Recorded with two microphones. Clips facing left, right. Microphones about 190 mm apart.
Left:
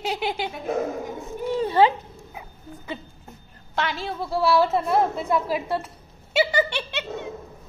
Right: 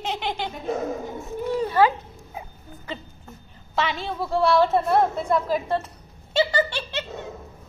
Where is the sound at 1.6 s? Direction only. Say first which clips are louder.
Left 1 dB; 25° left (ahead or behind).